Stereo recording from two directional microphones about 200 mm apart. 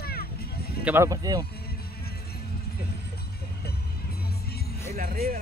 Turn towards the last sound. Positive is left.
turn(degrees=-45)  # may be behind; listen again after turning